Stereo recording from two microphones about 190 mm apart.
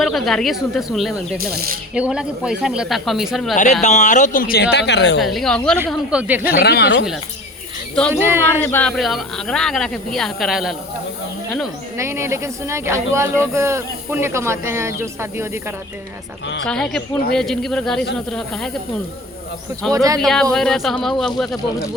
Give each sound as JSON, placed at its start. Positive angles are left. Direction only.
{"t": 0.0, "sound": "speech", "side_deg": 0}
{"t": 1.5, "sound": "speech", "side_deg": -50}
{"t": 2.0, "sound": "speech", "side_deg": -5}
{"t": 3.5, "sound": "speech", "side_deg": 40}
{"t": 5.2, "sound": "speech", "side_deg": 0}
{"t": 6.4, "sound": "speech", "side_deg": 55}
{"t": 8.1, "sound": "speech", "side_deg": -10}
{"t": 8.5, "sound": "speech", "side_deg": 10}
{"t": 11.9, "sound": "speech", "side_deg": -15}
{"t": 16.6, "sound": "speech", "side_deg": 5}
{"t": 20.1, "sound": "speech", "side_deg": 0}